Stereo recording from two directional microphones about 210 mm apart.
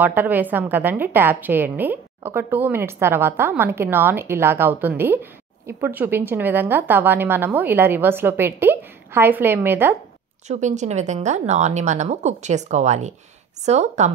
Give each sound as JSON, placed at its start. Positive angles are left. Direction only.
{"t": 0.0, "sound": "a woman's voice", "side_deg": -10}
{"t": 10.5, "sound": "a woman's voice", "side_deg": -35}